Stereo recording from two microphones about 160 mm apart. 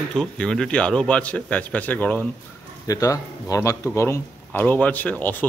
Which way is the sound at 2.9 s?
20° left (ahead or behind).